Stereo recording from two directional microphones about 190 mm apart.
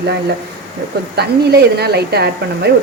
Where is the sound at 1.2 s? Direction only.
60° right (ahead or behind).